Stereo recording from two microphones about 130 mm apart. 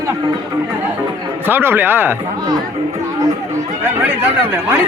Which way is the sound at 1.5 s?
15° right (ahead or behind).